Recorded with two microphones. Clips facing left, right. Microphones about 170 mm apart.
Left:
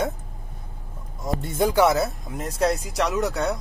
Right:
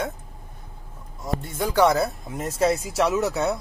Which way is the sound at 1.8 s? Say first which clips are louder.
Even; centre (ahead or behind).